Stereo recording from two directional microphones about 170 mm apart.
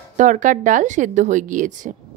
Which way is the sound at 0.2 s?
45° right (ahead or behind).